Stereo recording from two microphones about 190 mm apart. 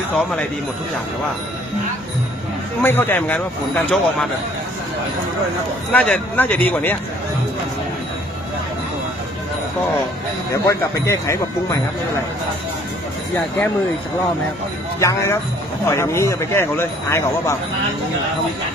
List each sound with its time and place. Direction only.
0.1 s a man's voice: 5° left (ahead or behind)
2.8 s speech: 10° left (ahead or behind)
5.9 s speech: 5° left (ahead or behind)
10.5 s speech: 15° left (ahead or behind)
15.0 s speech: 15° left (ahead or behind)